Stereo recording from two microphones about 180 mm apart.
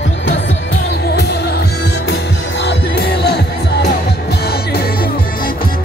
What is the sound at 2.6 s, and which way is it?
Music, 65° left (ahead or behind).